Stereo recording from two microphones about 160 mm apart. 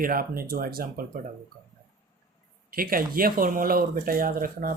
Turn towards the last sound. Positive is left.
turn(degrees=-60)  # may be behind; listen again after turning